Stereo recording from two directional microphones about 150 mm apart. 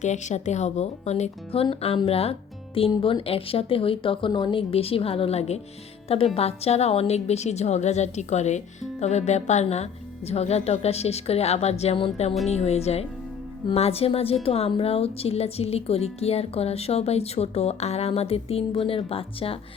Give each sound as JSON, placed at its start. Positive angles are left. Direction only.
{"t": 0.0, "sound": "a woman's voice", "side_deg": 50}
{"t": 1.6, "sound": "a woman's voice", "side_deg": 35}